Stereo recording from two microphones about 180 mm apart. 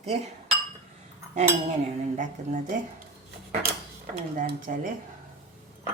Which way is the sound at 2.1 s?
45° right (ahead or behind).